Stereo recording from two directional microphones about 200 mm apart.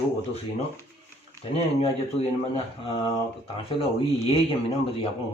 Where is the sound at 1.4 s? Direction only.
30° left (ahead or behind).